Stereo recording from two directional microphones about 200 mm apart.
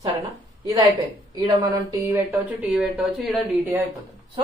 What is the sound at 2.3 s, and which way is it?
A woman's voice, 10° right (ahead or behind).